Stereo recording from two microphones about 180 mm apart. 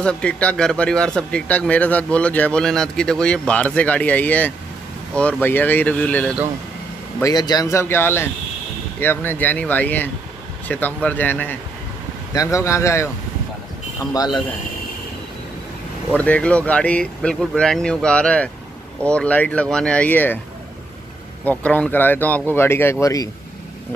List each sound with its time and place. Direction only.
0.0 s speech: 5° left (ahead or behind)
7.2 s speech: 20° left (ahead or behind)
14.1 s speech: 20° left (ahead or behind)
16.3 s speech: 5° left (ahead or behind)
21.5 s speech: 10° left (ahead or behind)